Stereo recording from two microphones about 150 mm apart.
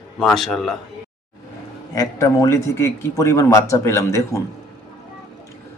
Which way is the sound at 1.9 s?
25° left (ahead or behind).